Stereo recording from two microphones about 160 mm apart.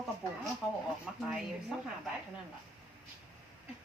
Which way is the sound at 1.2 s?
5° right (ahead or behind).